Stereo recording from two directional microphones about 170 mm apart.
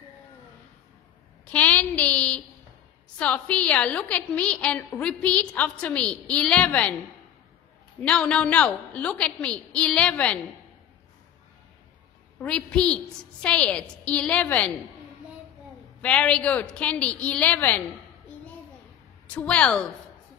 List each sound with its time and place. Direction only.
1.5 s a woman's voice: 10° left (ahead or behind)
8.0 s a woman's voice: 5° left (ahead or behind)
12.4 s a woman's voice: 5° left (ahead or behind)
16.0 s a woman's voice: 5° left (ahead or behind)
19.3 s a woman's voice: 5° left (ahead or behind)